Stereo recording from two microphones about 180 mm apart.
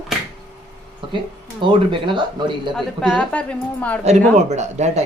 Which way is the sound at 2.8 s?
5° left (ahead or behind).